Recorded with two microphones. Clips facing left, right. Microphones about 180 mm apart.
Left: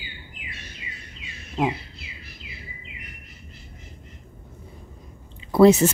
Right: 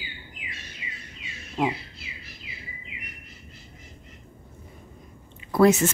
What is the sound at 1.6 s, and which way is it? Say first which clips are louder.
Speech: left 2 dB; 20° left (ahead or behind).